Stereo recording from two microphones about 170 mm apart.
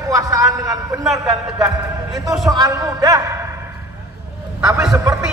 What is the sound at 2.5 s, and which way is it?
A man's voice, 20° right (ahead or behind).